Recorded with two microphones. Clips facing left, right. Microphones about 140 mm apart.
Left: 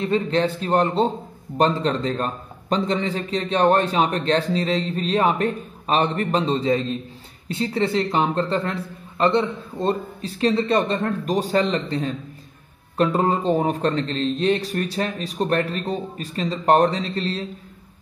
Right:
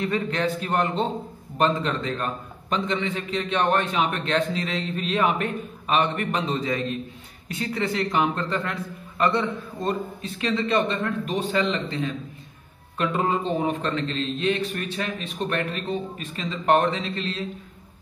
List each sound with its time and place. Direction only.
0.0 s a man's voice: 30° left (ahead or behind)